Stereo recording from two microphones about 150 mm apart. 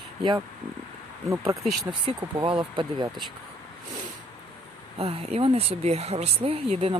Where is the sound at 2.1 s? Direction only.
35° right (ahead or behind).